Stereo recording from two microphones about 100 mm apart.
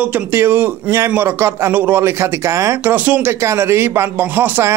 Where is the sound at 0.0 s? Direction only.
20° right (ahead or behind).